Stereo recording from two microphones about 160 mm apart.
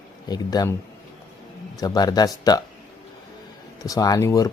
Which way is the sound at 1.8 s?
25° left (ahead or behind).